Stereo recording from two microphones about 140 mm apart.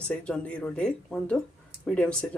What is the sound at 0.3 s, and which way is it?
Speech, 10° left (ahead or behind).